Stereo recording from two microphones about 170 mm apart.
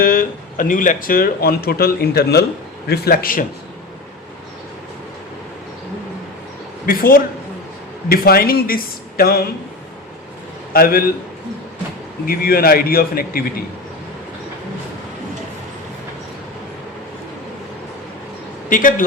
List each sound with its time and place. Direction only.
0.0 s speech: 55° left (ahead or behind)
6.8 s speech: 55° left (ahead or behind)
10.7 s a man's voice: 60° left (ahead or behind)
12.2 s speech: 60° left (ahead or behind)
18.7 s a man's voice: 50° left (ahead or behind)